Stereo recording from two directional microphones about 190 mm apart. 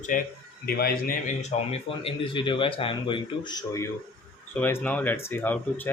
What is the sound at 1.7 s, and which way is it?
A man's voice, 30° left (ahead or behind).